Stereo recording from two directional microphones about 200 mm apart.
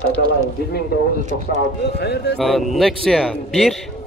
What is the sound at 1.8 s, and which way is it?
Speech, 55° left (ahead or behind).